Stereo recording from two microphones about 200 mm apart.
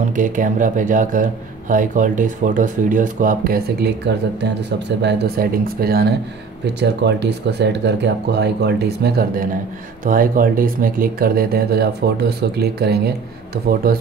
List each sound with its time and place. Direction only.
0.1 s speech: 40° right (ahead or behind)